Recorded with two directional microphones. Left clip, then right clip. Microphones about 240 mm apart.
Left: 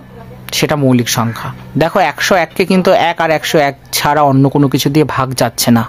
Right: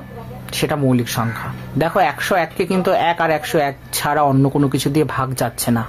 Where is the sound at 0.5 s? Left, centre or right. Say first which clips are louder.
Left 6 dB; left.